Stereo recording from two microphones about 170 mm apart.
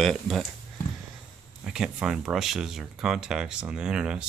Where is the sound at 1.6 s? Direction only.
5° right (ahead or behind).